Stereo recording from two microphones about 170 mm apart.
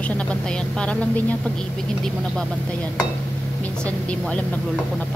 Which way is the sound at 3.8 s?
5° left (ahead or behind).